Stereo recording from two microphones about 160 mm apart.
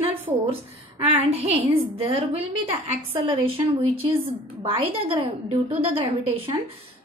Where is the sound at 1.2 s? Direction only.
35° right (ahead or behind).